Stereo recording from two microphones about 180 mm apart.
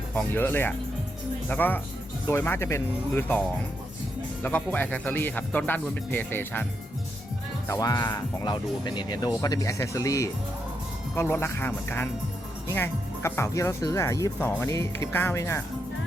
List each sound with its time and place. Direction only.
0.1 s speech: 10° left (ahead or behind)
4.4 s speech: 10° left (ahead or behind)
7.7 s speech: 20° left (ahead or behind)